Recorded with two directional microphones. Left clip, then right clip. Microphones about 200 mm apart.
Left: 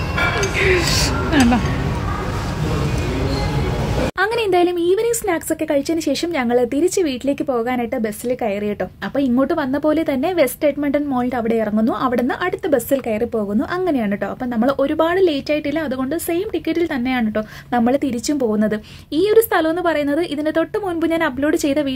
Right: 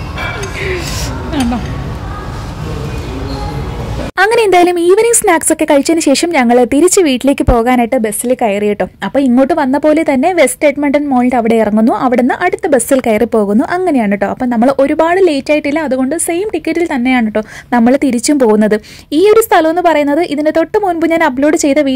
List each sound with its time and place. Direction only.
4.2 s a woman's voice: 35° right (ahead or behind)